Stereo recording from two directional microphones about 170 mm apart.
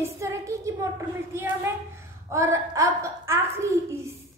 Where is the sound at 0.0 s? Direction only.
15° right (ahead or behind).